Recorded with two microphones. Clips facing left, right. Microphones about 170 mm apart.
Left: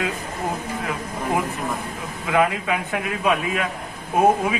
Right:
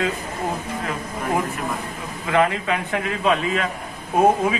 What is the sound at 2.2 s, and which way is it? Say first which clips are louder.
A man's voice: right 1 dB; 5° left (ahead or behind).